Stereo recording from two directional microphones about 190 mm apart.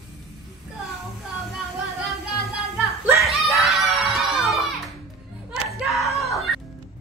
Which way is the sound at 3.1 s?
Centre (ahead or behind).